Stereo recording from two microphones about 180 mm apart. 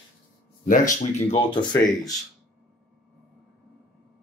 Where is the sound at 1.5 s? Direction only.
25° left (ahead or behind).